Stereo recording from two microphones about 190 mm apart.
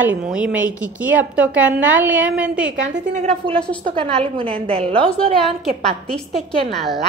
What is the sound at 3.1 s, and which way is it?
A woman's voice, 35° right (ahead or behind).